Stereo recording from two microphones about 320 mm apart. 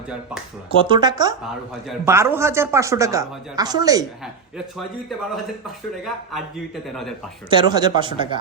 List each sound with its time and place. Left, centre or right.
0.7 s speech: centre
4.5 s a man's voice: centre
6.8 s a man's voice: centre
7.5 s speech: centre